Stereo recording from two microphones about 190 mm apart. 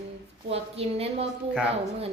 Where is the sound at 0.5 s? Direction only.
30° right (ahead or behind).